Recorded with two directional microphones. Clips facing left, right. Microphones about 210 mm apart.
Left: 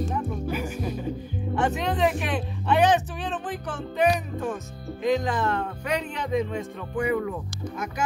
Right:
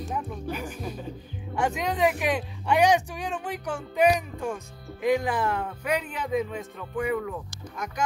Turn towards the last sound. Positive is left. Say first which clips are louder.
# left 2 dB
turn(degrees=0)  # may be behind; listen again after turning